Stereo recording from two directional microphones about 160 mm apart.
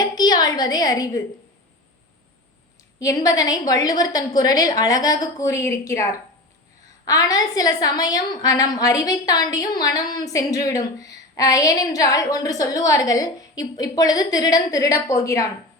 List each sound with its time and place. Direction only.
0.0 s a woman's voice: 25° left (ahead or behind)
3.0 s a woman's voice: 20° left (ahead or behind)